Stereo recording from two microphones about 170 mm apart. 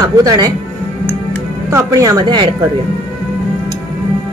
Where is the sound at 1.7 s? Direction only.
20° right (ahead or behind).